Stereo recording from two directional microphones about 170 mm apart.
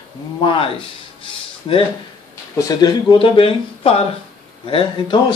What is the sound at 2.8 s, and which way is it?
Speech, 25° left (ahead or behind).